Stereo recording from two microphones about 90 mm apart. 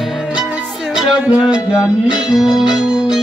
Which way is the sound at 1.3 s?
10° right (ahead or behind).